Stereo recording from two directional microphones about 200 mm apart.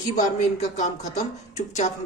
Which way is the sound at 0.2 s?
35° left (ahead or behind).